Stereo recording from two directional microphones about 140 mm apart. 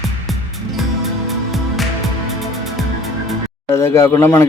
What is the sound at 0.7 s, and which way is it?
Music, centre (ahead or behind).